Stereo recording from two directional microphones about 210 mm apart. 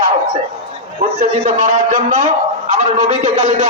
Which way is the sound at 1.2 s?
40° right (ahead or behind).